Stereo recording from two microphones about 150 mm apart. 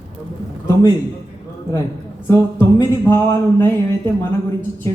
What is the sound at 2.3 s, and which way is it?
A woman's voice, 15° left (ahead or behind).